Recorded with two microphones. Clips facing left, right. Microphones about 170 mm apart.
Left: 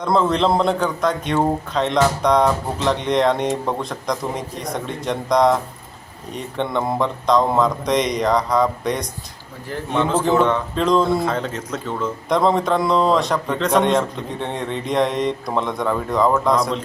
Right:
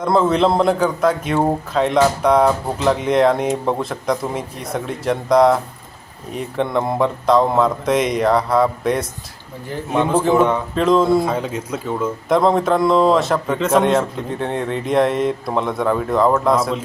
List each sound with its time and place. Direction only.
0.0 s speech: 5° right (ahead or behind)